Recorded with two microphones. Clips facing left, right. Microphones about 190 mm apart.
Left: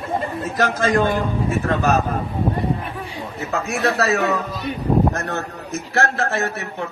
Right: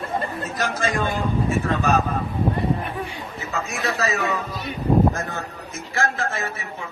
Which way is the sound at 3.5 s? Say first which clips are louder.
Left 6 dB; 70° left (ahead or behind).